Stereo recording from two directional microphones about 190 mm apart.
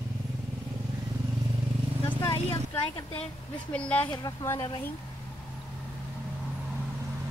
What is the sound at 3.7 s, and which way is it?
Speech, 5° left (ahead or behind).